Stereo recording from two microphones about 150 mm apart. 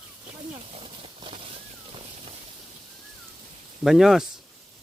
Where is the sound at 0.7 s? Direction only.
40° right (ahead or behind).